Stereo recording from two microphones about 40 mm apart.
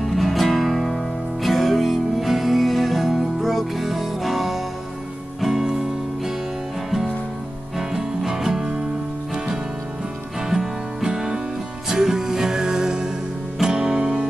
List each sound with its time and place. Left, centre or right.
0.0 s music: centre
7.9 s music: centre
10.5 s music: centre